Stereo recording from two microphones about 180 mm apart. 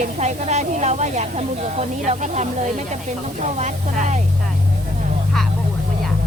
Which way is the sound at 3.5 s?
40° right (ahead or behind).